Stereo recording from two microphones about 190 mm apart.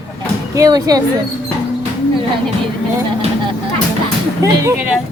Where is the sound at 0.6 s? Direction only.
20° right (ahead or behind).